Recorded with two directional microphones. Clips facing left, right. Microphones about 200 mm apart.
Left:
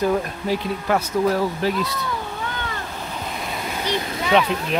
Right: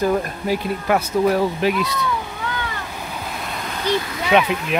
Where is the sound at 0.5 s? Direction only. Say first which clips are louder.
Right 2 dB; 10° right (ahead or behind).